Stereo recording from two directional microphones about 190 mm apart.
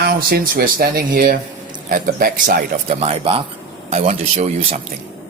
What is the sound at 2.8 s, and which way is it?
Speech, 30° right (ahead or behind).